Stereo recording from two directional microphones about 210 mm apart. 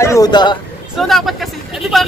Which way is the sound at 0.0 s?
15° left (ahead or behind).